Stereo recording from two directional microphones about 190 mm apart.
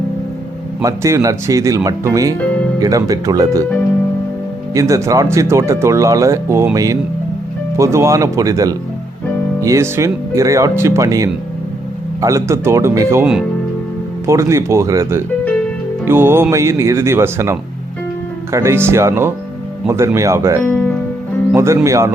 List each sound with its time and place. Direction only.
0.8 s speech: 15° right (ahead or behind)
4.7 s speech: 15° right (ahead or behind)
20.7 s speech: 10° left (ahead or behind)
21.5 s speech: 15° right (ahead or behind)